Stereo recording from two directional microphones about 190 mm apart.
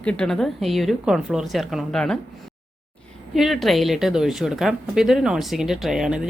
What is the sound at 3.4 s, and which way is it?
Speech, centre (ahead or behind).